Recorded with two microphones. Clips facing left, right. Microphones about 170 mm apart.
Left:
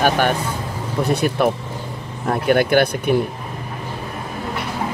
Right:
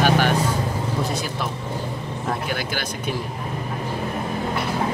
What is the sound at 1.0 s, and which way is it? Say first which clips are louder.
Speech: left 9 dB; 60° left (ahead or behind).